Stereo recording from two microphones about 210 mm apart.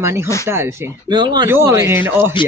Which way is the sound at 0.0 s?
15° right (ahead or behind).